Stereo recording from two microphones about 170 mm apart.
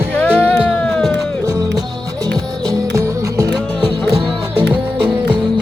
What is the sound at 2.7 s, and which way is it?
Music, 20° right (ahead or behind).